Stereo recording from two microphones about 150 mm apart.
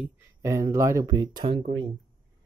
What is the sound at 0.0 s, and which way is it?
Speech, 15° right (ahead or behind).